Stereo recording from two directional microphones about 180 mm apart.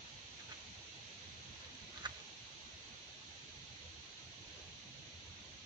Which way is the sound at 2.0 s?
25° right (ahead or behind).